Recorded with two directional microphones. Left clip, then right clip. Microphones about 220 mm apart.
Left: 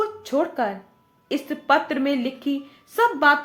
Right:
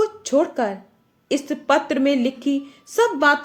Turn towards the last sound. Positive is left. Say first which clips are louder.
# right 1 dB
turn(degrees=-35)  # may be behind; listen again after turning